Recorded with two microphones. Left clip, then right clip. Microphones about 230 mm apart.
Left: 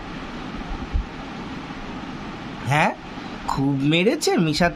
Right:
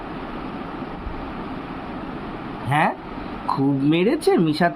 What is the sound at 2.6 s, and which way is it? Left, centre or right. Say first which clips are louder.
Speech: even; left.